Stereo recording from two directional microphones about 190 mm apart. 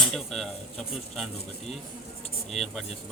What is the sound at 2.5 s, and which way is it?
Speech, centre (ahead or behind).